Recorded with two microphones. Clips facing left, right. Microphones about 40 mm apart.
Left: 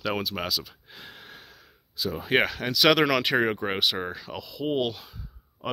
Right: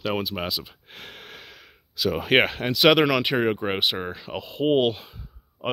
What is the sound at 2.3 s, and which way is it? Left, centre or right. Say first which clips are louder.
Speech: right 3 dB; right.